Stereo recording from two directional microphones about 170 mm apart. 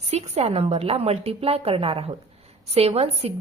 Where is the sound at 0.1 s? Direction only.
40° right (ahead or behind).